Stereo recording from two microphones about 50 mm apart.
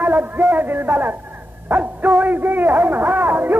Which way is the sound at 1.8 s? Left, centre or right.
Right.